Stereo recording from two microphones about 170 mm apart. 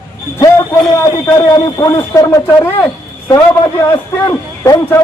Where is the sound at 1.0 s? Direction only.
20° left (ahead or behind).